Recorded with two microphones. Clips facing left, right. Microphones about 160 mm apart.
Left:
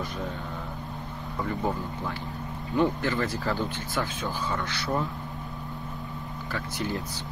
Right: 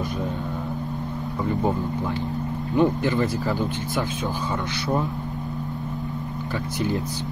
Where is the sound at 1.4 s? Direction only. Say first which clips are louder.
Right 5 dB; 20° right (ahead or behind).